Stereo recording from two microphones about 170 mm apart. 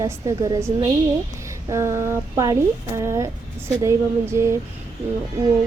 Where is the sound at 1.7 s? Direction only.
15° right (ahead or behind).